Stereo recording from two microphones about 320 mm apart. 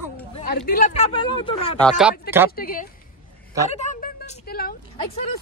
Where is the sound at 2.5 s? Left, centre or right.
Left.